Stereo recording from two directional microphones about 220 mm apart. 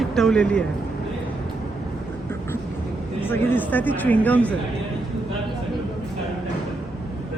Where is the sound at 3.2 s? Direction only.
10° left (ahead or behind).